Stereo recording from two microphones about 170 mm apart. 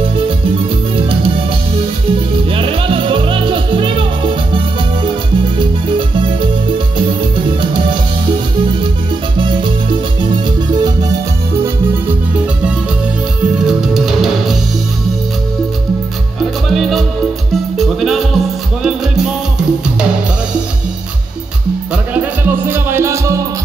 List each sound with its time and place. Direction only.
2.5 s music: 30° right (ahead or behind)
9.4 s music: 30° right (ahead or behind)
13.6 s music: 5° right (ahead or behind)
16.6 s music: centre (ahead or behind)
21.9 s music: 10° right (ahead or behind)